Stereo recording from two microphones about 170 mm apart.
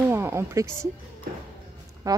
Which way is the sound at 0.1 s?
15° right (ahead or behind).